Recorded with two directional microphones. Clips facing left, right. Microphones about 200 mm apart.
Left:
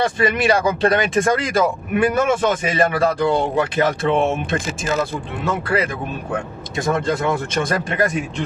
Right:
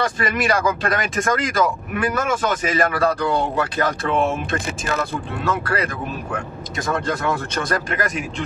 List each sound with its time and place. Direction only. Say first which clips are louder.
0.0 s speech: left 4 dB; 25° left (ahead or behind)
6.8 s speech: left 3 dB; 20° left (ahead or behind)